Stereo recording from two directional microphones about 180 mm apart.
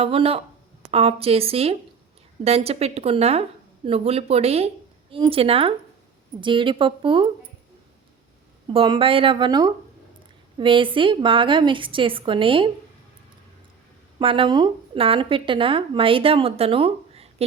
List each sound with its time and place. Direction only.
0.0 s a woman's voice: 30° right (ahead or behind)
8.6 s speech: 30° right (ahead or behind)
14.2 s speech: 30° right (ahead or behind)